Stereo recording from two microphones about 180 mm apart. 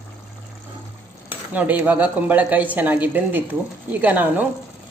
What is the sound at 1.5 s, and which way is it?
A woman's voice, 10° right (ahead or behind).